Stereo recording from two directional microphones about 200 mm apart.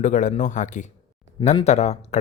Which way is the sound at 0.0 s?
40° left (ahead or behind).